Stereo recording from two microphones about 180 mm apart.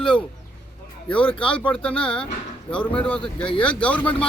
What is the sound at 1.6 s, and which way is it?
Speech, 5° left (ahead or behind).